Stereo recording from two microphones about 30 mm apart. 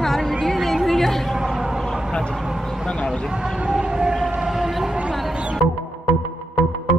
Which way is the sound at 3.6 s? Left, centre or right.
Centre.